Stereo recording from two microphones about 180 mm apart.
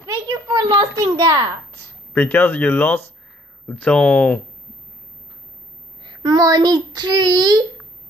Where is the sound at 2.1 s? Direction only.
10° left (ahead or behind).